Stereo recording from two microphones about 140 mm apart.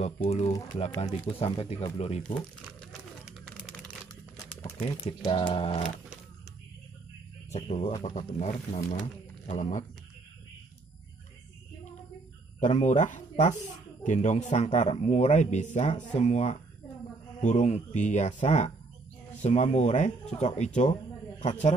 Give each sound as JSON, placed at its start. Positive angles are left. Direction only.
{"t": 0.0, "sound": "speech", "side_deg": 50}
{"t": 5.2, "sound": "a capella", "side_deg": 40}
{"t": 7.5, "sound": "a man's voice", "side_deg": 55}
{"t": 12.5, "sound": "a man's voice", "side_deg": 60}